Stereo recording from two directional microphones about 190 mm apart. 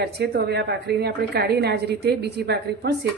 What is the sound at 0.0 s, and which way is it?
A woman's voice, 60° right (ahead or behind).